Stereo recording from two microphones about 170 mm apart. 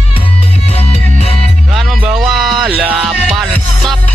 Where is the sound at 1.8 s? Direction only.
5° right (ahead or behind).